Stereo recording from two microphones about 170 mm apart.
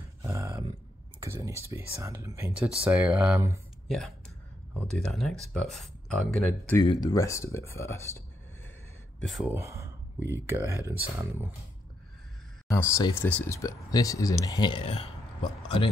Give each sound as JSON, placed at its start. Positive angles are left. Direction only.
{"t": 0.2, "sound": "a sound", "side_deg": -15}
{"t": 1.2, "sound": "speech", "side_deg": -15}
{"t": 3.8, "sound": "speech", "side_deg": 0}
{"t": 6.8, "sound": "speech", "side_deg": 20}
{"t": 9.2, "sound": "speech", "side_deg": 0}
{"t": 9.5, "sound": "speech", "side_deg": -15}
{"t": 12.6, "sound": "speech", "side_deg": 15}